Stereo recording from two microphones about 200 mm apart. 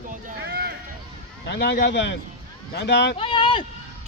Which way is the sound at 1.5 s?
60° left (ahead or behind).